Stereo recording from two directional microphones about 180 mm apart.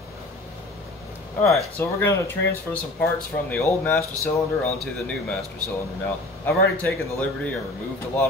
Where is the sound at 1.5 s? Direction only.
15° left (ahead or behind).